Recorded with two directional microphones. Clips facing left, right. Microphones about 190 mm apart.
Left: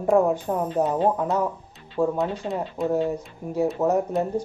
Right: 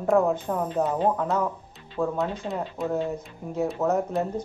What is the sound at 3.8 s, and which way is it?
Speech, 15° left (ahead or behind).